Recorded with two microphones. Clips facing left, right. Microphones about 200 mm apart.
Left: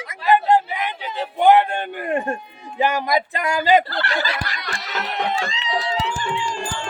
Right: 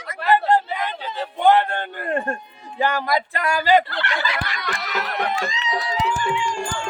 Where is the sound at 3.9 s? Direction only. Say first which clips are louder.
Left 2 dB; 40° left (ahead or behind).